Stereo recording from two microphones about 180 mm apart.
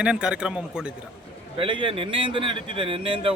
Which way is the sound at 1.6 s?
30° right (ahead or behind).